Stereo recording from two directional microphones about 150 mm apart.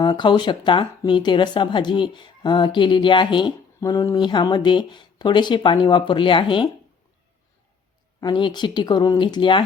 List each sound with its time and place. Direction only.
0.0 s speech: 30° left (ahead or behind)
8.2 s speech: 30° left (ahead or behind)